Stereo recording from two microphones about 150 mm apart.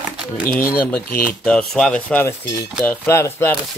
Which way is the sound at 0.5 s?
15° left (ahead or behind).